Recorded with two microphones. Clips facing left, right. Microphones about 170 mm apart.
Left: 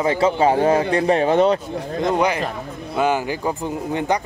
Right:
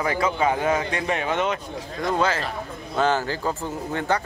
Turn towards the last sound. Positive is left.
turn(degrees=15)  # may be behind; listen again after turning